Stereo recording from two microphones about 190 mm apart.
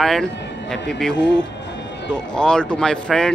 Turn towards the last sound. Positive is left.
turn(degrees=5)  # may be behind; listen again after turning